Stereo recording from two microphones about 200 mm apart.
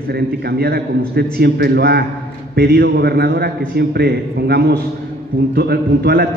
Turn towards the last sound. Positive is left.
turn(degrees=-55)  # may be behind; listen again after turning